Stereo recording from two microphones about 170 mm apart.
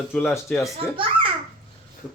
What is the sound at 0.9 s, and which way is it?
Speech, 30° right (ahead or behind).